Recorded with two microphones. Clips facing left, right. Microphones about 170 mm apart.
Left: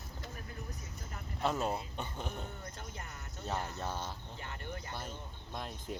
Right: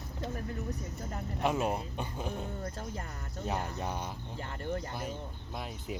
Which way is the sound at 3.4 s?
15° right (ahead or behind).